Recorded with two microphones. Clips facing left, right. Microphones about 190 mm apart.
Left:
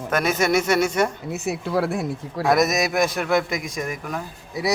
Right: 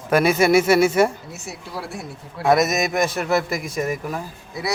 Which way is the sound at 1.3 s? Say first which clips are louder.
Left 9 dB; 60° left (ahead or behind).